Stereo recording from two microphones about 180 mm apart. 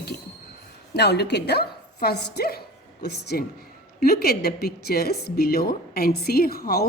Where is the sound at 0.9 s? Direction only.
65° left (ahead or behind).